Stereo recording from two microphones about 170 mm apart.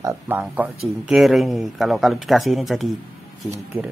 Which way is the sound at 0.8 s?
Centre (ahead or behind).